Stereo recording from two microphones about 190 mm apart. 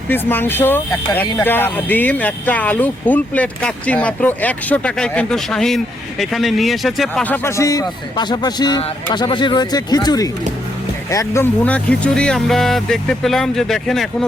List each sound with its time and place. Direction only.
0.1 s a man's voice: 10° left (ahead or behind)